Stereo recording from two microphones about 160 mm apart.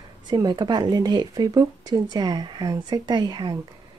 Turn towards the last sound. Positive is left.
turn(degrees=-25)  # may be behind; listen again after turning